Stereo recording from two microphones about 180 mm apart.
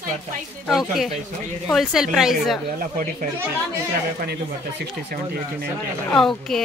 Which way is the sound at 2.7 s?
50° right (ahead or behind).